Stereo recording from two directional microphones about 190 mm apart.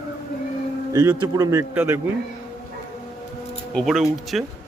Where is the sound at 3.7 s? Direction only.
Centre (ahead or behind).